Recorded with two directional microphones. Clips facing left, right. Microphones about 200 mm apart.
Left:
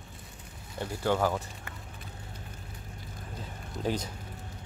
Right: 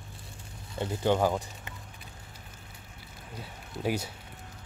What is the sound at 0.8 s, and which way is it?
Speech, 20° right (ahead or behind).